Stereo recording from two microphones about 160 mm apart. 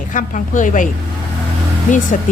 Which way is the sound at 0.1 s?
55° left (ahead or behind).